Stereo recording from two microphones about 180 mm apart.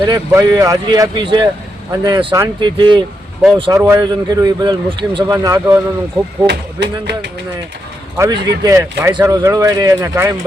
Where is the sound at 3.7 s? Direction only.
15° right (ahead or behind).